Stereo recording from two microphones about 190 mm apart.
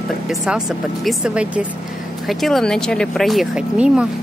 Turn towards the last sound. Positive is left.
turn(degrees=-5)  # may be behind; listen again after turning